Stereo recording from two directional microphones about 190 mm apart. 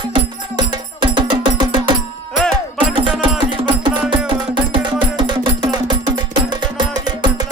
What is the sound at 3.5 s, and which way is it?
Music, 25° right (ahead or behind).